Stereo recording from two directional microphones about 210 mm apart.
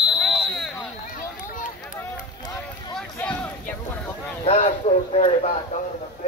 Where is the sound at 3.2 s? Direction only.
5° left (ahead or behind).